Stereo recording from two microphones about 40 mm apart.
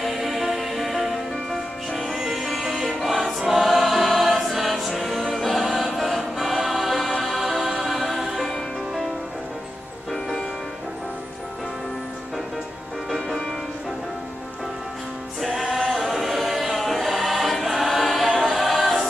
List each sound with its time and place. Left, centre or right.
0.0 s music: centre
3.0 s choir: centre
15.4 s music: centre
16.0 s choir: centre